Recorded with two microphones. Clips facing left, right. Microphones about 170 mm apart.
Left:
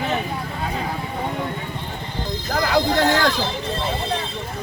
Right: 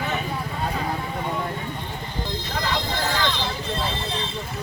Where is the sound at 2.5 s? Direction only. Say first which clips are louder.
Left 9 dB; 70° left (ahead or behind).